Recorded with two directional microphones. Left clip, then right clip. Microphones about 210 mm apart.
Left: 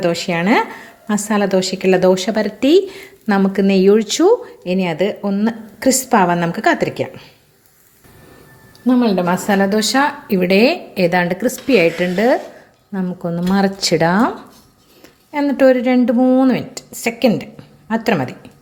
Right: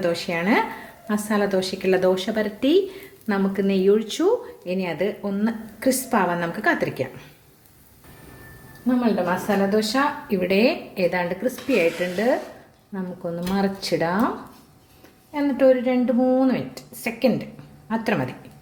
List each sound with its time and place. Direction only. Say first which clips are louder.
0.0 s a woman's voice: left 6 dB; 30° left (ahead or behind)
8.9 s a woman's voice: left 6 dB; 40° left (ahead or behind)
15.3 s a woman's voice: left 5 dB; 35° left (ahead or behind)